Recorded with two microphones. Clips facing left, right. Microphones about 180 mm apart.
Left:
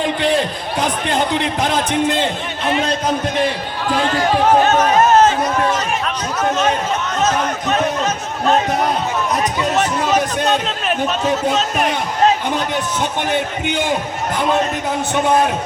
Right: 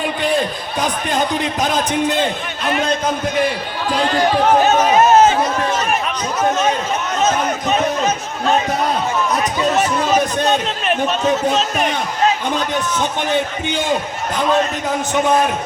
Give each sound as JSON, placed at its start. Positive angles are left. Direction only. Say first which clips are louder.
{"t": 1.6, "sound": "a man's voice", "louder": "right 2 dB", "side_deg": -15}
{"t": 4.6, "sound": "speech", "louder": "right 1 dB", "side_deg": -5}
{"t": 9.7, "sound": "a sound", "louder": "even", "side_deg": 0}
{"t": 10.8, "sound": "a man's voice", "louder": "right 2 dB", "side_deg": 0}